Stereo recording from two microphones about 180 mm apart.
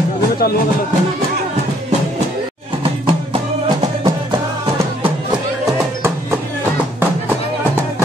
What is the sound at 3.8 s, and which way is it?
Music, 30° right (ahead or behind).